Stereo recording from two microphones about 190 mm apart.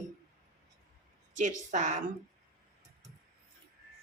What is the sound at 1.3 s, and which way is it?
Speech, 40° right (ahead or behind).